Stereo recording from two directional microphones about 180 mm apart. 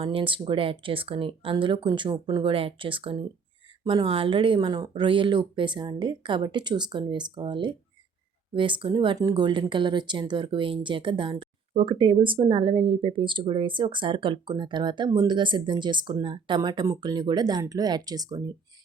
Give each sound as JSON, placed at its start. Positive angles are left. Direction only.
{"t": 0.0, "sound": "speech", "side_deg": -30}